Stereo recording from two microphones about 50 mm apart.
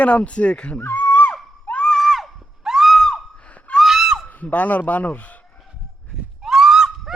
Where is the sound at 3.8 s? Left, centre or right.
Centre.